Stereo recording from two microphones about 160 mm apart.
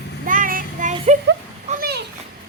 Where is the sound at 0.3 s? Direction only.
60° right (ahead or behind).